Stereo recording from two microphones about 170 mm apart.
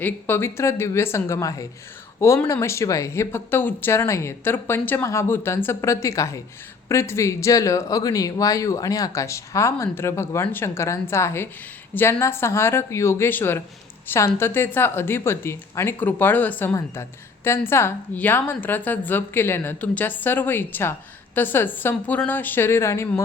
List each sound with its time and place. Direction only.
0.0 s a woman's voice: 15° left (ahead or behind)